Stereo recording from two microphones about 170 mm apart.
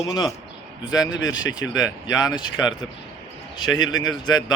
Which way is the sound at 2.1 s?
25° left (ahead or behind).